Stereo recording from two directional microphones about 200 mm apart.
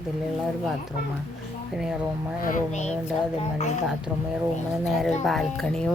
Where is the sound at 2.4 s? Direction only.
40° left (ahead or behind).